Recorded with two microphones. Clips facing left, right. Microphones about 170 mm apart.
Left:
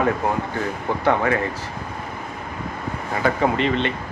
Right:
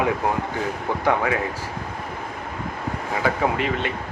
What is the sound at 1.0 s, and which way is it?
Speech, 5° right (ahead or behind).